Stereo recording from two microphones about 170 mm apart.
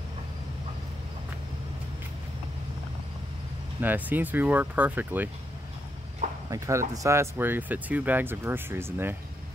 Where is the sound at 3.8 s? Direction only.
10° right (ahead or behind).